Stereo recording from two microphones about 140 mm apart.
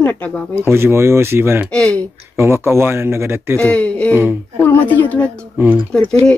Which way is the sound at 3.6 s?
10° left (ahead or behind).